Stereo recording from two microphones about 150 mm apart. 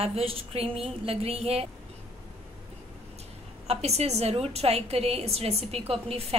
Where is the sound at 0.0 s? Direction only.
40° right (ahead or behind).